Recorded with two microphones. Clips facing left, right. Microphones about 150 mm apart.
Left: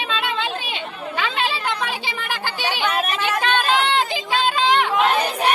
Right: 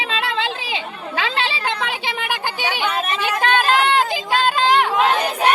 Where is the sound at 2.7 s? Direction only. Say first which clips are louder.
Even; 10° right (ahead or behind).